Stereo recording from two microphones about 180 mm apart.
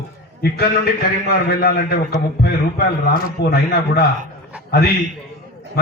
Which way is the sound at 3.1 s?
65° left (ahead or behind).